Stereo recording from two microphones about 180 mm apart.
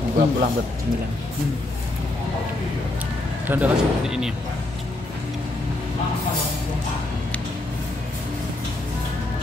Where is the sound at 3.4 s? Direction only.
10° right (ahead or behind).